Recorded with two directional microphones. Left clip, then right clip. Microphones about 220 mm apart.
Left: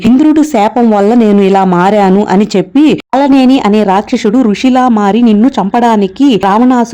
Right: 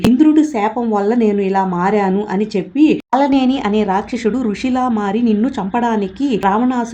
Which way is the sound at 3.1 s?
30° left (ahead or behind).